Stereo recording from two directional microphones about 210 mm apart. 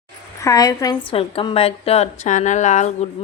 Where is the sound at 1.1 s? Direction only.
25° left (ahead or behind).